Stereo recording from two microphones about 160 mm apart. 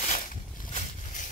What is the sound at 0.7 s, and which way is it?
Boat, 50° left (ahead or behind).